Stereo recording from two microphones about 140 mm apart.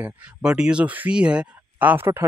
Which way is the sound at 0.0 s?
5° right (ahead or behind).